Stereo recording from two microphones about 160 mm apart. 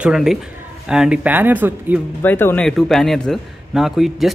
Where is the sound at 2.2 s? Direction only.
15° left (ahead or behind).